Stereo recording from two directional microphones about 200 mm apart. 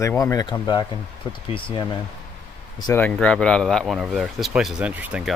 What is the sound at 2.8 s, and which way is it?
Speech, 10° left (ahead or behind).